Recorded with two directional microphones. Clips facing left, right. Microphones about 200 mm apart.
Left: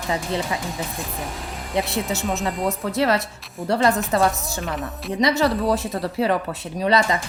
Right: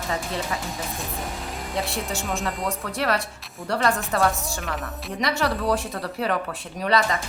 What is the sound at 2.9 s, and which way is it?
A woman's voice, 25° left (ahead or behind).